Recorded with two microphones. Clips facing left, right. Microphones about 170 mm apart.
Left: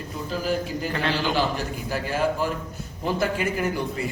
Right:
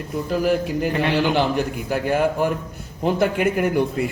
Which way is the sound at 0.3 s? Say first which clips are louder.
Right 6 dB; 60° right (ahead or behind).